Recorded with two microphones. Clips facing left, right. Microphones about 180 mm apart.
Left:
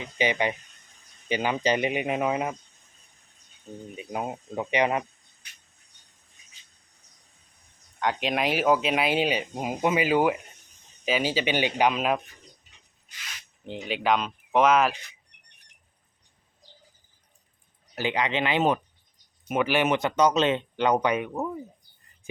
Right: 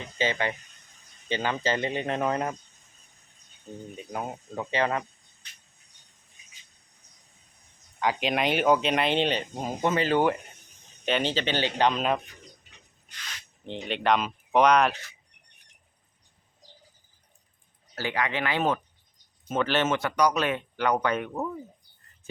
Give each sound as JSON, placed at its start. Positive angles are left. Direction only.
{"t": 0.0, "sound": "speech", "side_deg": 15}
{"t": 3.9, "sound": "speech", "side_deg": 15}
{"t": 7.9, "sound": "speech", "side_deg": 0}
{"t": 13.8, "sound": "speech", "side_deg": 5}
{"t": 17.9, "sound": "speech", "side_deg": 20}